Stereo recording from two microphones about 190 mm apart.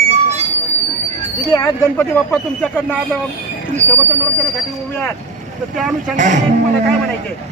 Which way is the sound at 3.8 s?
15° right (ahead or behind).